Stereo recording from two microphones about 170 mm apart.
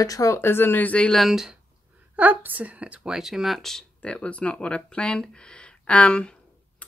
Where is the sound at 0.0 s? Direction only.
20° left (ahead or behind).